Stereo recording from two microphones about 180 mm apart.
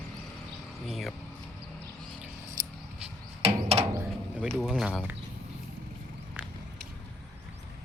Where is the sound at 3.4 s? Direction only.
35° right (ahead or behind).